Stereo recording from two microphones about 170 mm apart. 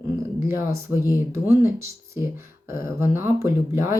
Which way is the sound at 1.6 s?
15° right (ahead or behind).